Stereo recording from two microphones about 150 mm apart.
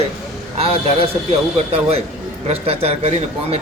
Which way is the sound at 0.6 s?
40° right (ahead or behind).